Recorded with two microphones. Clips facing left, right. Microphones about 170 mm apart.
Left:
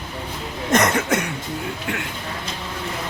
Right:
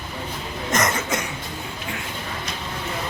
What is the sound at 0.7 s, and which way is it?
Cough, 60° left (ahead or behind).